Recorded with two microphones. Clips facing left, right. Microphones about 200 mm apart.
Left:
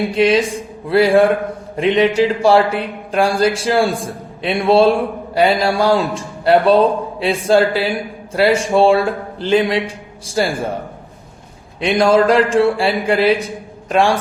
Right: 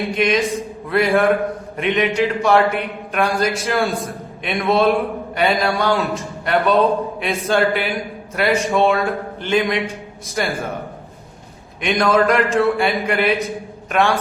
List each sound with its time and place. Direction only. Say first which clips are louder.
0.1 s a man's voice: left 3 dB; 30° left (ahead or behind)
11.8 s a man's voice: left 4 dB; 30° left (ahead or behind)